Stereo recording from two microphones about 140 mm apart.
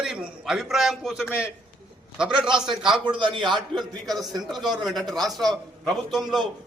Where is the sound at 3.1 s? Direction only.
35° right (ahead or behind).